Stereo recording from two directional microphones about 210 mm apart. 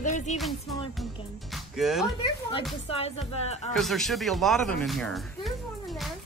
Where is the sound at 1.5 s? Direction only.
Centre (ahead or behind).